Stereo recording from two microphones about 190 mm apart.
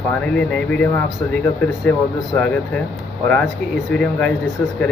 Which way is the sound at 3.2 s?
5° left (ahead or behind).